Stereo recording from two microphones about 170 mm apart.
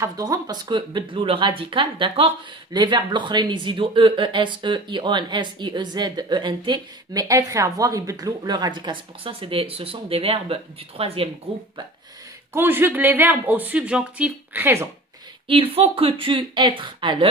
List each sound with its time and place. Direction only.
0.0 s speech: 20° right (ahead or behind)
12.5 s speech: 15° right (ahead or behind)
15.4 s speech: 35° right (ahead or behind)